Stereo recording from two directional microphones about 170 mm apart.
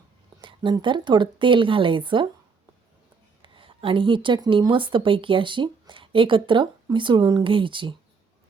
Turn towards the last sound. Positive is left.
turn(degrees=-30)  # may be behind; listen again after turning